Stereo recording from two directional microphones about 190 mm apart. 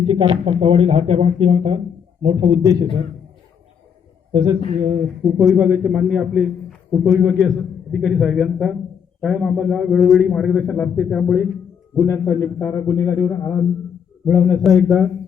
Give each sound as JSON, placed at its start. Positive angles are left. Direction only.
{"t": 0.1, "sound": "a man's voice", "side_deg": -30}
{"t": 4.3, "sound": "a man's voice", "side_deg": -25}
{"t": 4.8, "sound": "a man's voice", "side_deg": -10}
{"t": 12.0, "sound": "a man's voice", "side_deg": 15}